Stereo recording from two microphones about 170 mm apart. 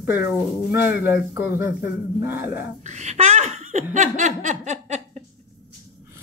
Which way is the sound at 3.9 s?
45° right (ahead or behind).